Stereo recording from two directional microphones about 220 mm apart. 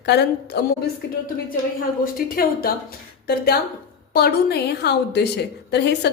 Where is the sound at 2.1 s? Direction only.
40° left (ahead or behind).